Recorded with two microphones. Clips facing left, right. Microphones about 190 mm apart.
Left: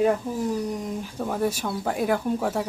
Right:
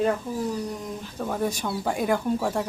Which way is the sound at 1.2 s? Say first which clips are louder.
Left 1 dB; 5° left (ahead or behind).